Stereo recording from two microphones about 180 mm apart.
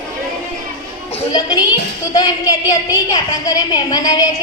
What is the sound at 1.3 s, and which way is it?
A woman's voice, 20° left (ahead or behind).